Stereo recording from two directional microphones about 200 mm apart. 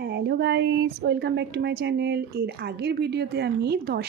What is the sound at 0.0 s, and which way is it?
A woman's voice, 55° right (ahead or behind).